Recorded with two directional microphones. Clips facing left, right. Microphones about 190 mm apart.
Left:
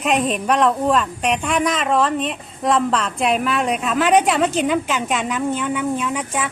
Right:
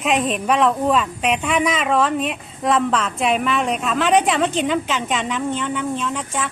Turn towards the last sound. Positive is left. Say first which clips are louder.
# left 2 dB
turn(degrees=10)  # may be behind; listen again after turning